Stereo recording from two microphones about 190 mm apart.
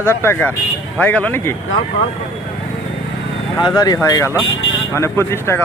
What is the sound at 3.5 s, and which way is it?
Speech, 20° left (ahead or behind).